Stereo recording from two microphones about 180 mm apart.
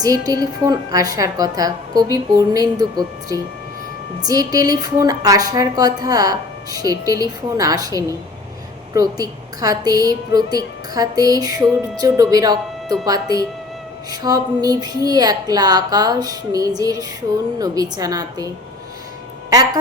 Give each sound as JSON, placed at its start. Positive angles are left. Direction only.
{"t": 0.0, "sound": "a woman's voice", "side_deg": -20}